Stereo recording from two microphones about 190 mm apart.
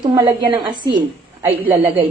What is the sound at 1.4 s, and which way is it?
Speech, 10° right (ahead or behind).